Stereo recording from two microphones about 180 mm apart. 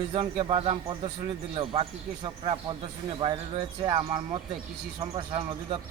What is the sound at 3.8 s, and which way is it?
A man's voice, 30° right (ahead or behind).